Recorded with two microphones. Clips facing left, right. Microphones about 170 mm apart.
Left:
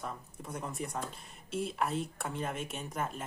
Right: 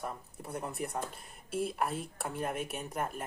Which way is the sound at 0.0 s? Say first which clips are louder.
Right 1 dB; 10° right (ahead or behind).